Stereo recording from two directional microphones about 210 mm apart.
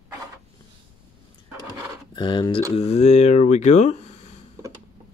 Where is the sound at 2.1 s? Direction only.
20° left (ahead or behind).